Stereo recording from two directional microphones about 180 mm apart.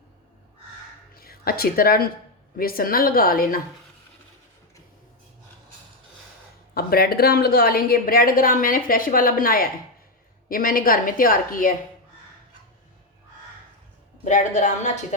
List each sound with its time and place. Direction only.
1.1 s a woman's voice: 55° left (ahead or behind)
6.7 s a woman's voice: 60° left (ahead or behind)
14.3 s a woman's voice: 45° left (ahead or behind)